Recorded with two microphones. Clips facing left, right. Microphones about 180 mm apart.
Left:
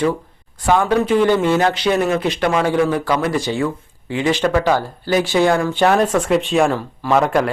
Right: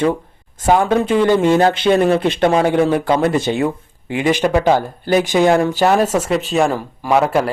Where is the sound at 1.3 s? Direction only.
15° right (ahead or behind).